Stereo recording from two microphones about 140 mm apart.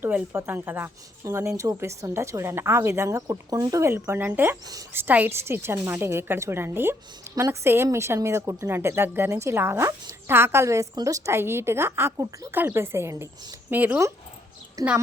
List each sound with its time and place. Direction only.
0.0 s a woman's voice: 15° right (ahead or behind)
14.8 s speech: 25° right (ahead or behind)